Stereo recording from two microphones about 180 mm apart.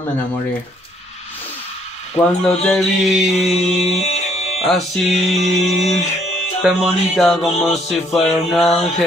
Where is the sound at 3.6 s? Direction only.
35° left (ahead or behind).